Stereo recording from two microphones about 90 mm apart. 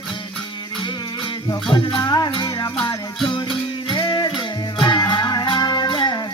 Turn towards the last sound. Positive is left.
turn(degrees=60)  # may be behind; listen again after turning